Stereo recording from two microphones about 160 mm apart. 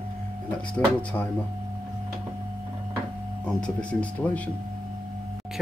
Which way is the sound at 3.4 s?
5° left (ahead or behind).